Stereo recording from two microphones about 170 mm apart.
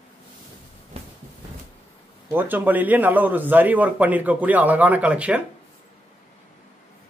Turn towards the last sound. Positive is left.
turn(degrees=-10)  # may be behind; listen again after turning